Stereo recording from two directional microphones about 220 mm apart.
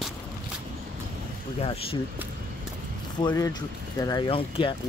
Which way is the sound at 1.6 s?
25° left (ahead or behind).